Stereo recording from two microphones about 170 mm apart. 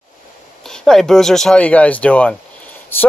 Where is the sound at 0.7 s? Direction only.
5° left (ahead or behind).